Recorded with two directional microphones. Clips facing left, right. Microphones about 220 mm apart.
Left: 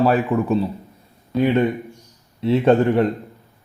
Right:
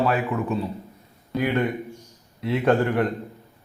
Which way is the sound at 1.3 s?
25° left (ahead or behind).